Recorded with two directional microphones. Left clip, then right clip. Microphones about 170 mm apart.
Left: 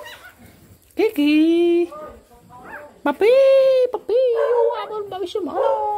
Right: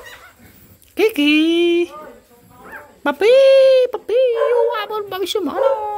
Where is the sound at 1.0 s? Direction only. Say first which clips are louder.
Right 2 dB; 5° right (ahead or behind).